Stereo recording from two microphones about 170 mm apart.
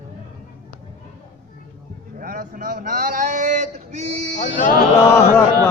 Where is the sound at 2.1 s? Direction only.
55° right (ahead or behind); by 4.3 s 40° right (ahead or behind).